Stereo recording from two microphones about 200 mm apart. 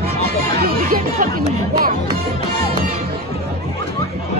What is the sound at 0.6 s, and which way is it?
Music, 45° right (ahead or behind).